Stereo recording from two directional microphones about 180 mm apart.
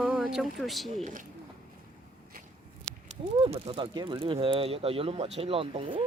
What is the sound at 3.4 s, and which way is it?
Speech, 30° right (ahead or behind).